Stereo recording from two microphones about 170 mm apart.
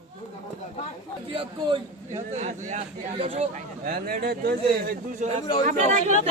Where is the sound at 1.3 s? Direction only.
30° right (ahead or behind).